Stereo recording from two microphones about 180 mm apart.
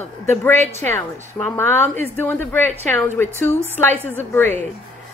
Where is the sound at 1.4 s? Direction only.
10° left (ahead or behind).